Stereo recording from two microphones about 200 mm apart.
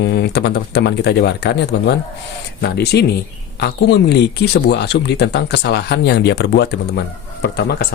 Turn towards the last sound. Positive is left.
turn(degrees=55)  # may be behind; listen again after turning